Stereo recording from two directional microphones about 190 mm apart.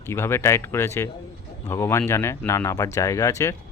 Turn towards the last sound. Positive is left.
turn(degrees=15)  # may be behind; listen again after turning